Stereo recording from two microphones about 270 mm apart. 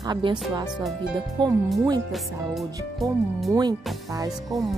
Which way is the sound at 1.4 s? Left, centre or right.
Centre.